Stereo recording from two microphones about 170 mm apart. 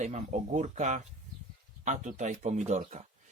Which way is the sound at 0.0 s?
45° right (ahead or behind).